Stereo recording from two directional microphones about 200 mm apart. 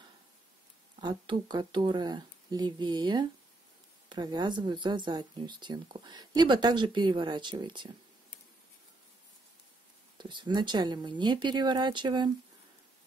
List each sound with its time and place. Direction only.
1.0 s speech: 20° right (ahead or behind)
10.1 s speech: 25° right (ahead or behind)